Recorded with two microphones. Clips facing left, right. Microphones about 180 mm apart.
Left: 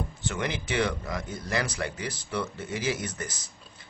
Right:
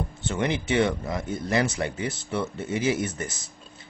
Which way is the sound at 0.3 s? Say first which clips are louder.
Right 6 dB; 25° right (ahead or behind).